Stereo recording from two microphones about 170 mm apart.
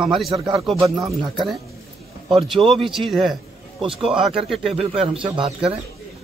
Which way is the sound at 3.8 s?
30° right (ahead or behind).